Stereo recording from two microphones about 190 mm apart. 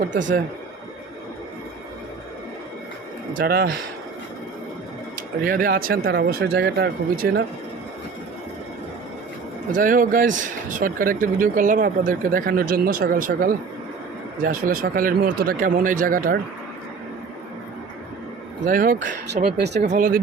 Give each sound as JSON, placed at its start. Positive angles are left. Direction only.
{"t": 0.1, "sound": "speech", "side_deg": -75}
{"t": 3.3, "sound": "speech", "side_deg": -55}
{"t": 5.1, "sound": "speech", "side_deg": -45}
{"t": 9.7, "sound": "speech", "side_deg": -45}
{"t": 18.6, "sound": "speech", "side_deg": -45}
{"t": 19.5, "sound": "speech", "side_deg": -60}
{"t": 19.8, "sound": "speech", "side_deg": -40}